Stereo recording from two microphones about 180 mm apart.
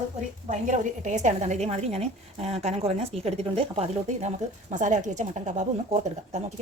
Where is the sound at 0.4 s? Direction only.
40° right (ahead or behind).